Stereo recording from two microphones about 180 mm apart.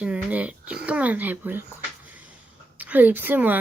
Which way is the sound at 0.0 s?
10° right (ahead or behind).